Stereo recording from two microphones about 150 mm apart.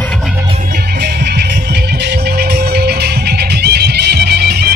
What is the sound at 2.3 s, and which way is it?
Music, 90° right.